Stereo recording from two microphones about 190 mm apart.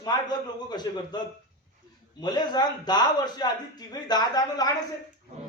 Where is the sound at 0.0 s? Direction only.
20° left (ahead or behind).